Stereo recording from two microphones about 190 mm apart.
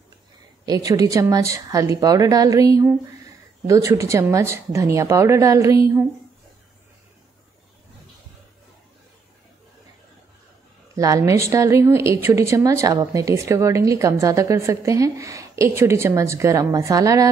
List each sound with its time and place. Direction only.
0.7 s a woman's voice: 20° right (ahead or behind)
11.0 s a woman's voice: 15° right (ahead or behind)